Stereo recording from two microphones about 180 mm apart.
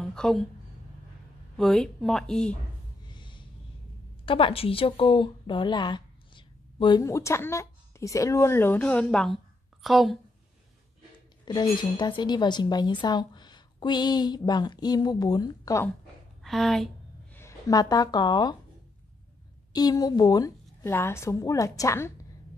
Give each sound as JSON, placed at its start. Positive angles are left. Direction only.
{"t": 0.0, "sound": "a woman's voice", "side_deg": 5}
{"t": 1.6, "sound": "speech", "side_deg": 0}
{"t": 3.1, "sound": "snort", "side_deg": 25}
{"t": 4.3, "sound": "speech", "side_deg": 30}
{"t": 11.4, "sound": "speech", "side_deg": 25}
{"t": 16.4, "sound": "a sound", "side_deg": 0}
{"t": 17.4, "sound": "speech", "side_deg": 20}
{"t": 19.7, "sound": "a woman's voice", "side_deg": 20}